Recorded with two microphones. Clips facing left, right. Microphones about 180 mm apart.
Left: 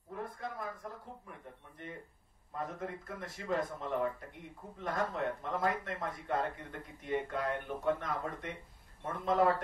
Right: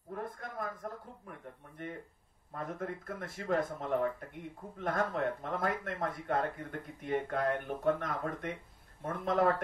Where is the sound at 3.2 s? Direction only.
55° right (ahead or behind).